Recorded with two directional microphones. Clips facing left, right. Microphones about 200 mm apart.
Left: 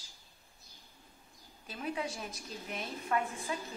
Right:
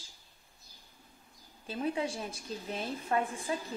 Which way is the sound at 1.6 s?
30° right (ahead or behind).